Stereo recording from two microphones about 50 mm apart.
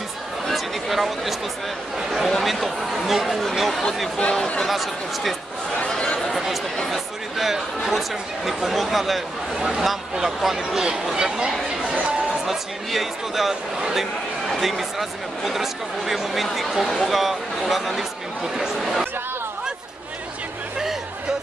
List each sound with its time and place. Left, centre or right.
0.5 s speech: centre
4.2 s speech: centre
4.6 s speech: centre
5.9 s a sound: centre
6.3 s a man's voice: centre
12.4 s speech: centre